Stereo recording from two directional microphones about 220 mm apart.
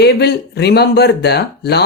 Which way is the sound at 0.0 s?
50° left (ahead or behind).